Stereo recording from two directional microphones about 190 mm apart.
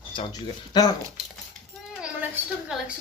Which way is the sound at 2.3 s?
5° right (ahead or behind).